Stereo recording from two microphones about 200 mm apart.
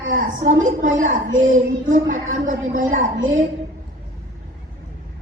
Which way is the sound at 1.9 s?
40° right (ahead or behind).